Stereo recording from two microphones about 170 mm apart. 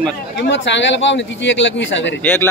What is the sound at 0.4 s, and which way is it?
Speech, 90° left.